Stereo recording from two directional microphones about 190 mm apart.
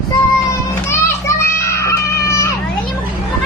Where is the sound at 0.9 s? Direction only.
15° left (ahead or behind).